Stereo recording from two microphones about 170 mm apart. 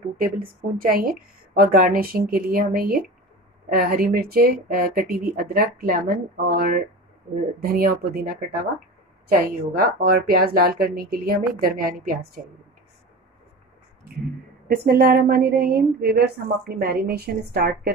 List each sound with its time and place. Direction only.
0.2 s speech: 60° right (ahead or behind)
14.9 s speech: 65° right (ahead or behind)